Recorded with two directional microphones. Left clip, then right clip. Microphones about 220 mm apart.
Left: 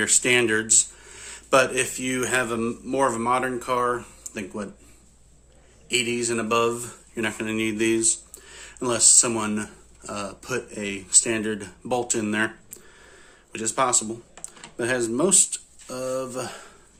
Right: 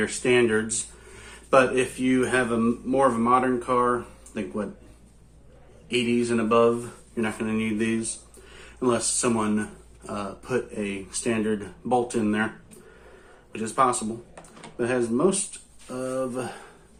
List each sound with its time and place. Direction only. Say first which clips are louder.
0.0 s speech: left 1 dB; 55° left (ahead or behind)
5.9 s speech: even; 55° left (ahead or behind)
13.5 s speech: right 1 dB; 50° left (ahead or behind)